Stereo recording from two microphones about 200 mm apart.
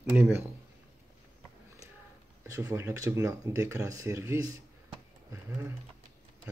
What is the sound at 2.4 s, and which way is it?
Speech, 15° right (ahead or behind).